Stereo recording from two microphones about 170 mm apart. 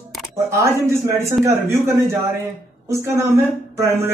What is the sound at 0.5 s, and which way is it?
Speech, 15° right (ahead or behind).